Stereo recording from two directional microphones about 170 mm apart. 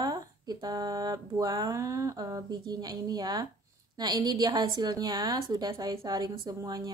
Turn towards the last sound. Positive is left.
turn(degrees=-20)  # may be behind; listen again after turning